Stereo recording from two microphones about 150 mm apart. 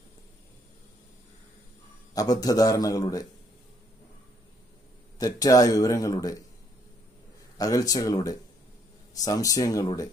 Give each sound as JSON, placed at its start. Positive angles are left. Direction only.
{"t": 2.1, "sound": "a man's voice", "side_deg": 25}
{"t": 5.2, "sound": "a man's voice", "side_deg": 25}
{"t": 7.5, "sound": "a man's voice", "side_deg": 25}